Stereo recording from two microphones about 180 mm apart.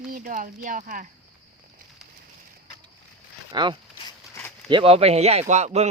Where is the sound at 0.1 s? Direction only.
50° right (ahead or behind).